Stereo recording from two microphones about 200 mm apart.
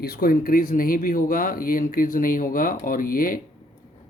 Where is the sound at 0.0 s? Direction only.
50° left (ahead or behind).